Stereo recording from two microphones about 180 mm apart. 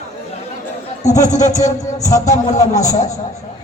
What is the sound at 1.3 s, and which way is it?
Speech, 40° left (ahead or behind).